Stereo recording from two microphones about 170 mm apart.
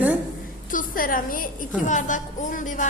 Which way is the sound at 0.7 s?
55° left (ahead or behind).